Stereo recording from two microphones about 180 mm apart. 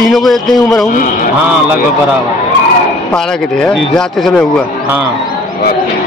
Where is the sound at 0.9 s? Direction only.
50° left (ahead or behind).